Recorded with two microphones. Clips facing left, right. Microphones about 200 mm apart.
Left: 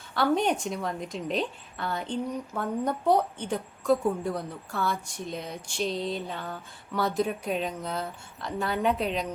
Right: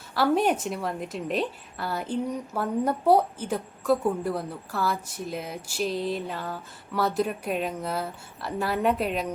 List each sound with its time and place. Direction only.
0.1 s a woman's voice: 5° right (ahead or behind)